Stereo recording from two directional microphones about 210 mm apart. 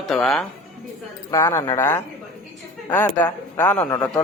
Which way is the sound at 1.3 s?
15° left (ahead or behind).